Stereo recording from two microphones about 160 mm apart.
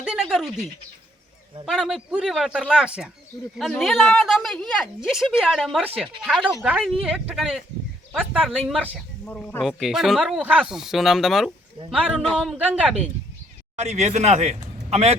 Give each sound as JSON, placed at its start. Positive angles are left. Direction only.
{"t": 0.0, "sound": "a sound", "side_deg": -5}
{"t": 1.6, "sound": "speech", "side_deg": -5}
{"t": 9.2, "sound": "speech", "side_deg": 10}
{"t": 13.7, "sound": "a man's voice", "side_deg": -45}